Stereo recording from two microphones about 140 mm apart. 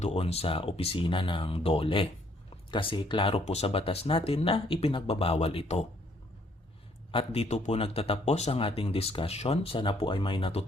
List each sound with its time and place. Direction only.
0.0 s speech: 45° left (ahead or behind)
7.1 s speech: 40° left (ahead or behind)